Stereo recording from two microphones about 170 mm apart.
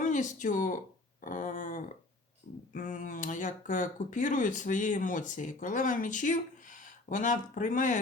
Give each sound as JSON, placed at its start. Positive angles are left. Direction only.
{"t": 0.0, "sound": "speech", "side_deg": 45}
{"t": 1.2, "sound": "a sound", "side_deg": 50}
{"t": 2.7, "sound": "speech", "side_deg": 50}